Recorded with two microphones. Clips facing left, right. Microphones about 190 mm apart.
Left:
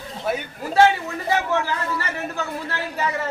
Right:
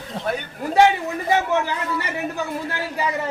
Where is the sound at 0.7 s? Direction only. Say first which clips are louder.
Right 1 dB; 20° right (ahead or behind).